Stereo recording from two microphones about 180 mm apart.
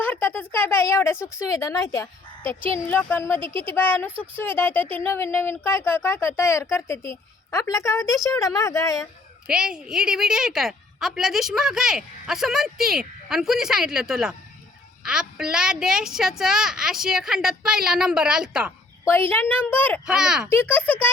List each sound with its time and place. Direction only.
0.0 s a woman's voice: 10° left (ahead or behind)
9.5 s a woman's voice: 5° right (ahead or behind)
19.0 s a woman's voice: 15° left (ahead or behind)
20.1 s a woman's voice: 5° right (ahead or behind)
20.7 s a woman's voice: 10° left (ahead or behind)